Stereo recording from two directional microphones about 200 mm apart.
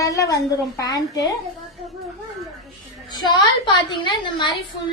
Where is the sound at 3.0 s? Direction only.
20° left (ahead or behind).